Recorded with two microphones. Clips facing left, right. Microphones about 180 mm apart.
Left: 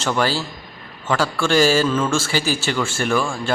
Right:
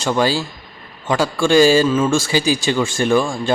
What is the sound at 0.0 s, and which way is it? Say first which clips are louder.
A man's voice: right 3 dB; 15° right (ahead or behind).